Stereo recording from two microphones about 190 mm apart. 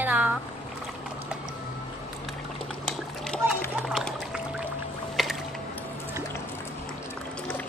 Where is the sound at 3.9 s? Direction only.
Centre (ahead or behind).